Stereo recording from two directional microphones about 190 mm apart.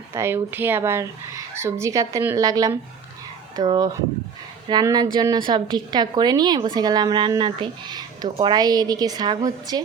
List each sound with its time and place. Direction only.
0.1 s a woman's voice: 15° right (ahead or behind)